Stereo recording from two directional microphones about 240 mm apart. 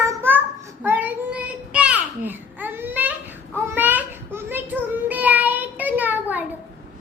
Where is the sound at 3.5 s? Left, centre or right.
Centre.